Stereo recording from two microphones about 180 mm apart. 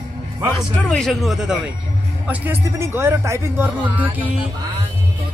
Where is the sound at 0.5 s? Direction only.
5° left (ahead or behind).